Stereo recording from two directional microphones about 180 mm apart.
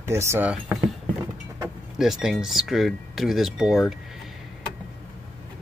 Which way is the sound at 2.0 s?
Centre (ahead or behind).